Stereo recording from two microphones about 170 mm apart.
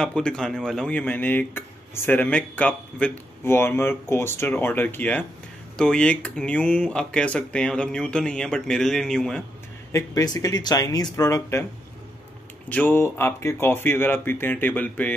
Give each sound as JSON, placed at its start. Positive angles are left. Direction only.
{"t": 0.0, "sound": "speech", "side_deg": 5}
{"t": 9.9, "sound": "speech", "side_deg": 20}
{"t": 12.6, "sound": "speech", "side_deg": 10}